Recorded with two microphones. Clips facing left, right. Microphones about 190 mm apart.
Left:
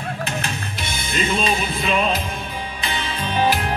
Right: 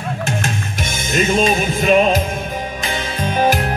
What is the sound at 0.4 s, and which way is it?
Music, 45° right (ahead or behind).